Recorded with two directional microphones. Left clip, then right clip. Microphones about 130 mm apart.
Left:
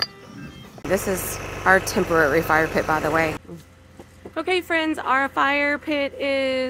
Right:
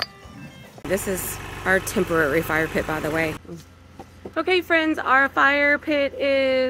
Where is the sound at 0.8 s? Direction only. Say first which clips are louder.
Left 2 dB; 35° right (ahead or behind).